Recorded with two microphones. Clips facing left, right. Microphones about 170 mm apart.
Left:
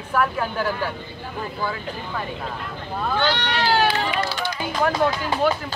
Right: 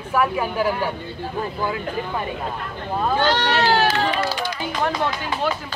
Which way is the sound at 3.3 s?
45° right (ahead or behind).